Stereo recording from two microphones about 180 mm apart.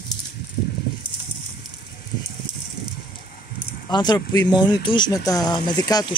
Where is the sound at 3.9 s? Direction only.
25° left (ahead or behind).